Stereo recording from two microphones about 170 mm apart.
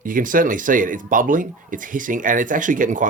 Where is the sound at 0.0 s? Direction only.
50° right (ahead or behind).